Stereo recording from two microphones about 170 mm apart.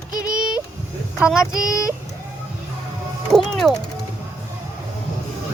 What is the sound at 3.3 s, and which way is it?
Speech, centre (ahead or behind).